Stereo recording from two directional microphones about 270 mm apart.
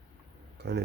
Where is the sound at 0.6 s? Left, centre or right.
Right.